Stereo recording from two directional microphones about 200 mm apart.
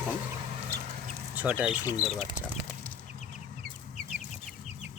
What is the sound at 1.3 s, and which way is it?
Speech, 10° right (ahead or behind).